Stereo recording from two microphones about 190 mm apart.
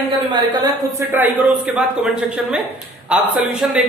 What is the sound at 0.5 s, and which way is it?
Speech, 20° right (ahead or behind).